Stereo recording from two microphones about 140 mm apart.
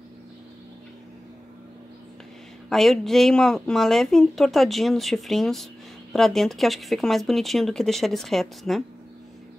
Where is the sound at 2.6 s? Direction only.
Centre (ahead or behind).